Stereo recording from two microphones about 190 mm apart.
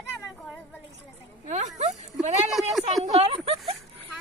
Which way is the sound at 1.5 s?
40° right (ahead or behind).